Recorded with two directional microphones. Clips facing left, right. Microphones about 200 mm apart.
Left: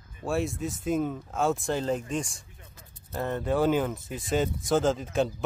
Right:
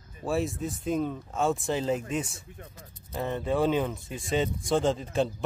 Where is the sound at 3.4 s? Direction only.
Centre (ahead or behind).